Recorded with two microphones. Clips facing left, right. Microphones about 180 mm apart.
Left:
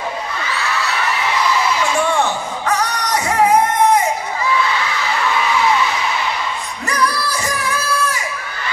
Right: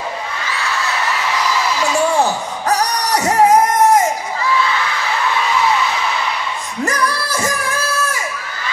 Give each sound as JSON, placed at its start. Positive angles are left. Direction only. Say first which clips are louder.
{"t": 2.1, "sound": "music", "louder": "right 2 dB", "side_deg": -35}
{"t": 6.9, "sound": "music", "louder": "left 2 dB", "side_deg": -45}